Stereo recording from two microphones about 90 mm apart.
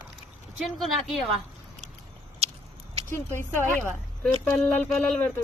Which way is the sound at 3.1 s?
25° left (ahead or behind).